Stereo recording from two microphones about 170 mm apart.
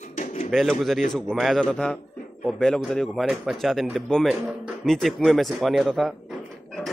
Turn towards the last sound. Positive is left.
turn(degrees=0)  # may be behind; listen again after turning